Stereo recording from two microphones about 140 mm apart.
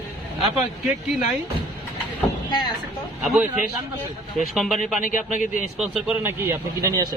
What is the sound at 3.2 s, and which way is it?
Speech, 5° right (ahead or behind).